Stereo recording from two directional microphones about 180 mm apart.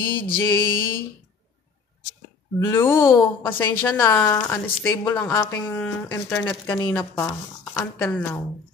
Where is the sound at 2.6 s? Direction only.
15° left (ahead or behind).